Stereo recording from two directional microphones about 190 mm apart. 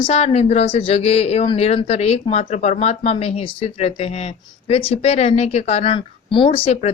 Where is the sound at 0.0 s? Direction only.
35° left (ahead or behind).